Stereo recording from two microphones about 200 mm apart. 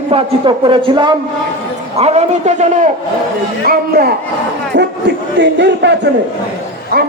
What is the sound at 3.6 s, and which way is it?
Speech, 50° right (ahead or behind).